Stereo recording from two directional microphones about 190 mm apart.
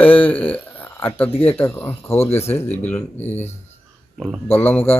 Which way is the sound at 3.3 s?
35° left (ahead or behind).